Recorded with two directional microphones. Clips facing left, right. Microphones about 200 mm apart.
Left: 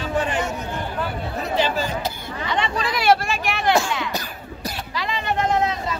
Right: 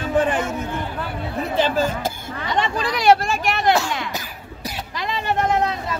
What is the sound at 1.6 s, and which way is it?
Speech, 50° right (ahead or behind).